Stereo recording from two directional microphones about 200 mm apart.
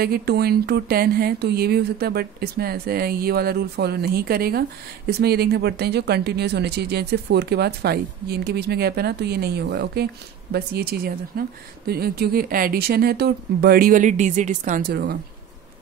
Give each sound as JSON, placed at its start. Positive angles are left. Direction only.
{"t": 0.0, "sound": "speech", "side_deg": -50}